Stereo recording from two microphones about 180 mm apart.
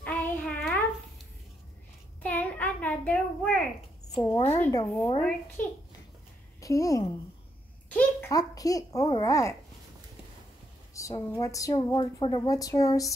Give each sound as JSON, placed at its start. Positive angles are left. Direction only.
{"t": 0.0, "sound": "a sound", "side_deg": 10}
{"t": 2.2, "sound": "child singing", "side_deg": 10}
{"t": 4.2, "sound": "speech", "side_deg": 15}
{"t": 6.6, "sound": "a woman's voice", "side_deg": 20}
{"t": 7.9, "sound": "babbling", "side_deg": 10}
{"t": 8.3, "sound": "a woman's voice", "side_deg": 20}
{"t": 11.0, "sound": "a woman's voice", "side_deg": 15}